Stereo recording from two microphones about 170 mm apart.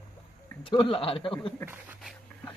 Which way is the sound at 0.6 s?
30° left (ahead or behind).